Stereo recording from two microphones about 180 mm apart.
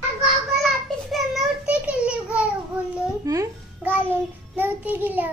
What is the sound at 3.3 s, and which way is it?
Babbling, 15° right (ahead or behind).